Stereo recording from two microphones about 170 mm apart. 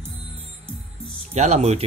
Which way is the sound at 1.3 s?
40° right (ahead or behind).